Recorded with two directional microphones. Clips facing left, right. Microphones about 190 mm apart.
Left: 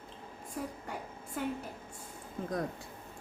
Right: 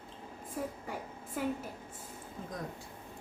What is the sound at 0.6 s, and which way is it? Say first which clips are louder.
Speech: right 1 dB; centre (ahead or behind).